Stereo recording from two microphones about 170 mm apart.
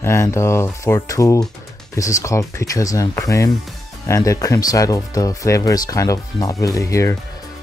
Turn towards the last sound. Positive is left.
turn(degrees=20)  # may be behind; listen again after turning